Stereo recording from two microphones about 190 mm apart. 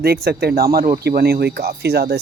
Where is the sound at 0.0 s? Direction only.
55° right (ahead or behind).